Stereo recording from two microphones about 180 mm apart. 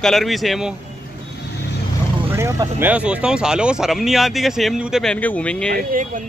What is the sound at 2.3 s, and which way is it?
Speech, 15° right (ahead or behind).